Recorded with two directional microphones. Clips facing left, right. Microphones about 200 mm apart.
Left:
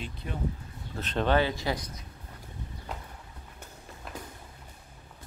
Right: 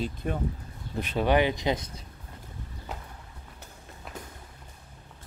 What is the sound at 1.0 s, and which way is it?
Speech, 10° right (ahead or behind).